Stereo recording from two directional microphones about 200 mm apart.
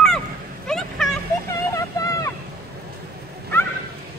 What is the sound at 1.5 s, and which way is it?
Vehicle, 15° left (ahead or behind).